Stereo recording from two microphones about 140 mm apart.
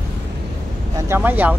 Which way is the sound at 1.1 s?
15° right (ahead or behind).